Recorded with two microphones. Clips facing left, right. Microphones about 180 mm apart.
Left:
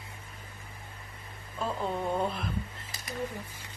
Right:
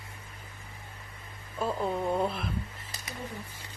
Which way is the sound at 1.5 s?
Centre (ahead or behind).